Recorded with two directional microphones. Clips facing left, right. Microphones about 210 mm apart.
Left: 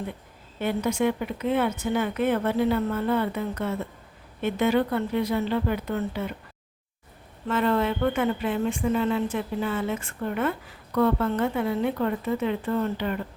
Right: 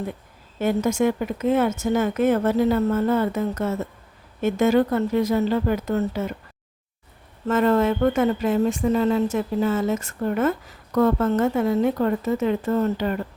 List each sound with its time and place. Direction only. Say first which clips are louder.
0.6 s speech: right 4 dB; 45° right (ahead or behind)
7.4 s speech: right 5 dB; 45° right (ahead or behind)